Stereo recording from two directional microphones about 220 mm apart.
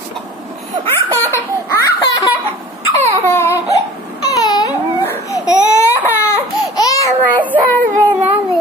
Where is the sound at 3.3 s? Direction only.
10° left (ahead or behind).